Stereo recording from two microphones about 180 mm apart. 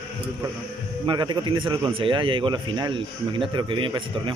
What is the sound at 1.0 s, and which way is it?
Speech, 25° right (ahead or behind).